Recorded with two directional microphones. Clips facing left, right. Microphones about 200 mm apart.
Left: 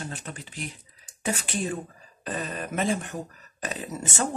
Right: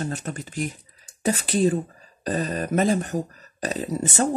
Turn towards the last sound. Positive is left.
turn(degrees=-35)  # may be behind; listen again after turning